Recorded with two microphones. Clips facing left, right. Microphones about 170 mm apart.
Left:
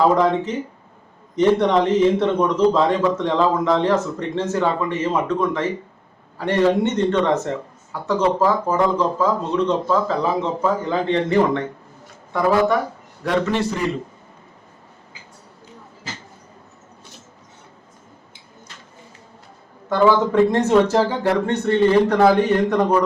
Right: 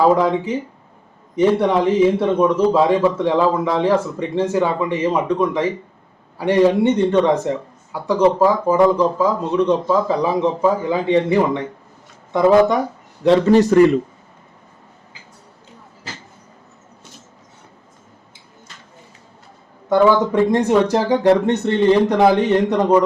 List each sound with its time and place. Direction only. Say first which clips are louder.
0.2 s a man's voice: right 1 dB; 10° right (ahead or behind)
13.2 s a man's voice: right 8 dB; 35° right (ahead or behind)
20.5 s speech: right 1 dB; 15° right (ahead or behind)